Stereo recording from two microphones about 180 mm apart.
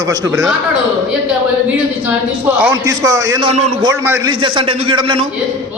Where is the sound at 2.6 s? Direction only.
10° right (ahead or behind).